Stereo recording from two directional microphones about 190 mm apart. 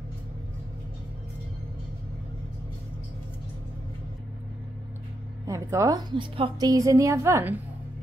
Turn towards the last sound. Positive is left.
turn(degrees=-15)  # may be behind; listen again after turning